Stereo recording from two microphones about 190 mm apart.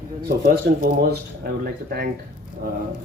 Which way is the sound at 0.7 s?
65° right (ahead or behind).